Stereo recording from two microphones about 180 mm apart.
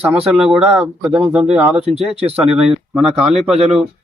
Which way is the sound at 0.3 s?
5° right (ahead or behind).